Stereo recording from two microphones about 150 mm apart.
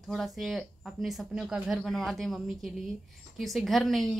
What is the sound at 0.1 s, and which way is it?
A woman's voice, centre (ahead or behind).